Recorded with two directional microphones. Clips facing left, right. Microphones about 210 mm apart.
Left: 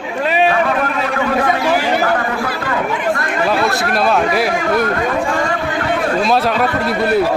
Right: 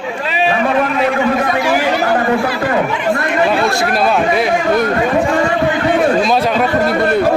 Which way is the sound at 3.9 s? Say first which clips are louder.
Even; centre (ahead or behind).